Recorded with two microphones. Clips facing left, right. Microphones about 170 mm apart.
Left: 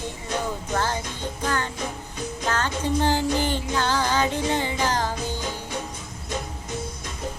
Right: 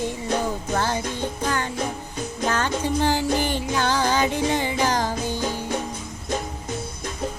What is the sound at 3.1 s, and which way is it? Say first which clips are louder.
Music: right 1 dB; 10° right (ahead or behind).